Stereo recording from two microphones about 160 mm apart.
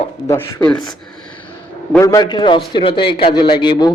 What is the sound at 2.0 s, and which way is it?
A man's voice, 25° left (ahead or behind).